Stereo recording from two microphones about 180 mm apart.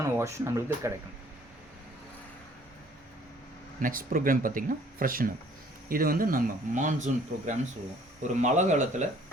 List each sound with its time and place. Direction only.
0.0 s speech: 15° right (ahead or behind)
3.8 s speech: 50° right (ahead or behind)